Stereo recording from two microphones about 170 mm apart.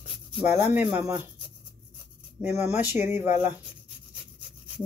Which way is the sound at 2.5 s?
40° left (ahead or behind).